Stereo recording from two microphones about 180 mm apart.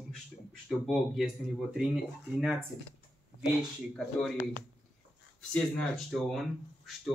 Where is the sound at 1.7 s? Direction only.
5° right (ahead or behind).